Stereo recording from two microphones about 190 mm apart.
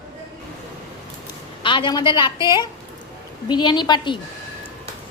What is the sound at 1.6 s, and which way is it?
A woman's voice, 25° left (ahead or behind).